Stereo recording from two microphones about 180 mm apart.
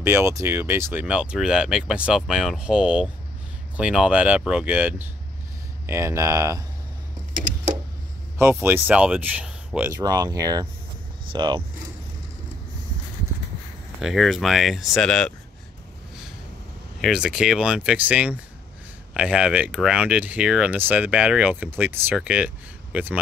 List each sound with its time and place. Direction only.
0.0 s speech: 15° right (ahead or behind)
8.4 s speech: 10° right (ahead or behind)
9.8 s speech: 15° right (ahead or behind)
14.0 s speech: centre (ahead or behind)
17.0 s speech: 5° right (ahead or behind)